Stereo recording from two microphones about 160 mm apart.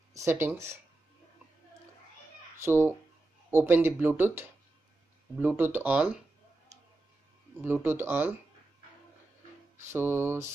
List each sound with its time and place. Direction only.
0.1 s speech: 15° right (ahead or behind)
2.6 s speech: 15° right (ahead or behind)
7.6 s speech: 15° right (ahead or behind)
9.9 s speech: 15° right (ahead or behind)